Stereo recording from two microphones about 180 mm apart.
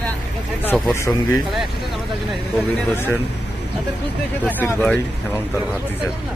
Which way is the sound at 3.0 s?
10° left (ahead or behind).